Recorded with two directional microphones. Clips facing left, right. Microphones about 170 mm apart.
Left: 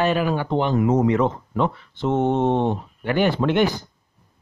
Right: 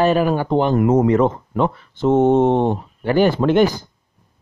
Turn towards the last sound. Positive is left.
turn(degrees=-40)  # may be behind; listen again after turning